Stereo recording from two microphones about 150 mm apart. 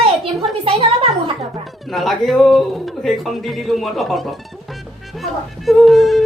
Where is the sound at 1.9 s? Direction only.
Centre (ahead or behind).